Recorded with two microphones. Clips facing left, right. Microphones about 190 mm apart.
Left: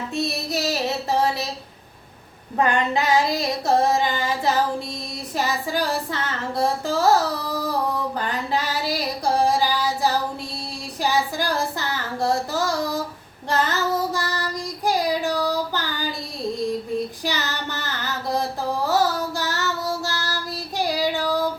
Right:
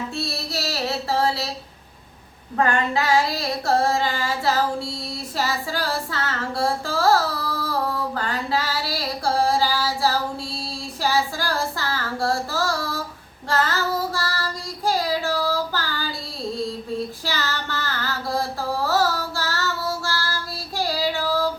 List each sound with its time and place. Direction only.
0.1 s music: 20° left (ahead or behind)
2.6 s child singing: 20° left (ahead or behind)
5.4 s music: 20° left (ahead or behind)
11.0 s child singing: 20° left (ahead or behind)
17.2 s female singing: 20° left (ahead or behind)
18.9 s child singing: 15° left (ahead or behind)